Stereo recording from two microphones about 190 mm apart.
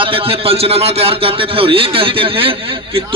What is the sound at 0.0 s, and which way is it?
A man's voice, 30° right (ahead or behind).